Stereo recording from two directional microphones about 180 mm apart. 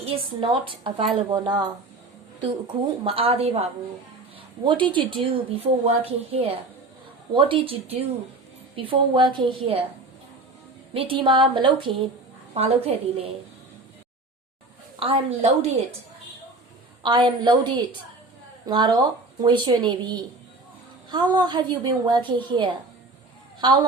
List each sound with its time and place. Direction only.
0.0 s a woman's voice: 30° right (ahead or behind)
2.8 s a woman's voice: 30° right (ahead or behind)
10.9 s a woman's voice: 30° right (ahead or behind)
14.9 s speech: 30° right (ahead or behind)
17.0 s a woman's voice: 25° right (ahead or behind)